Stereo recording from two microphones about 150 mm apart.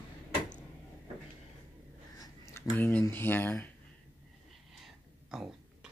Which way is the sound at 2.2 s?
15° left (ahead or behind).